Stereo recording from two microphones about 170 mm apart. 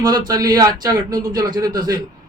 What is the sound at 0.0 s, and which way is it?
A man's voice, 25° right (ahead or behind).